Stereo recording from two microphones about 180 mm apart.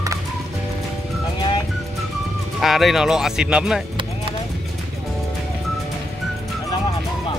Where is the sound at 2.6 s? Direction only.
Centre (ahead or behind).